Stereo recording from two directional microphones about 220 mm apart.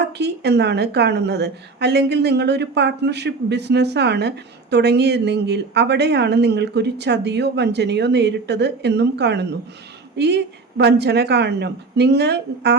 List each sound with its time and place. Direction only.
0.0 s a woman's voice: 50° right (ahead or behind)